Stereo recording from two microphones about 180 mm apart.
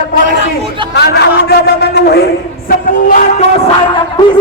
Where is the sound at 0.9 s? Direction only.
60° left (ahead or behind).